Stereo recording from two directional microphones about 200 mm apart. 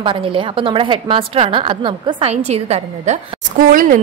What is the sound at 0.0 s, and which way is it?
A woman's voice, 25° right (ahead or behind).